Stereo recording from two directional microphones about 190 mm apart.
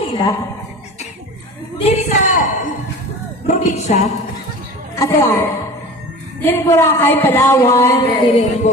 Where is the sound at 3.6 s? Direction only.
35° left (ahead or behind).